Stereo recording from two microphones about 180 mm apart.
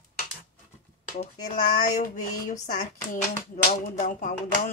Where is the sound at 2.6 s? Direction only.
50° left (ahead or behind).